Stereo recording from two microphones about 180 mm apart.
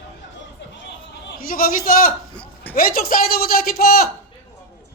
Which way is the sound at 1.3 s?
55° left (ahead or behind).